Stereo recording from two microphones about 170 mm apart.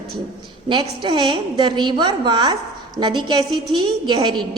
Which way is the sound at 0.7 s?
30° right (ahead or behind).